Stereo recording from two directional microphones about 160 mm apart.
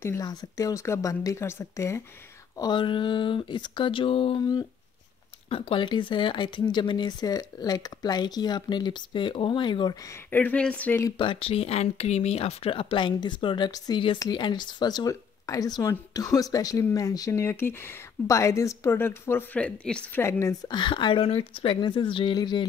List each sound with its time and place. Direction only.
0.0 s speech: 20° left (ahead or behind)
10.3 s speech: 10° left (ahead or behind)
11.1 s speech: 35° left (ahead or behind); by 20.7 s 15° left (ahead or behind)
20.7 s speech: 30° left (ahead or behind)